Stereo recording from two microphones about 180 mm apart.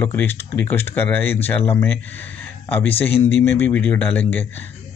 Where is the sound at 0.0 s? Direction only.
10° left (ahead or behind).